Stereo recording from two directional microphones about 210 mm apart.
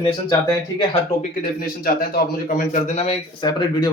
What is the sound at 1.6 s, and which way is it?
A man's voice, 45° left (ahead or behind).